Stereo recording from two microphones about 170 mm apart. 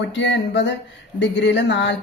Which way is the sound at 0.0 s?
90° left.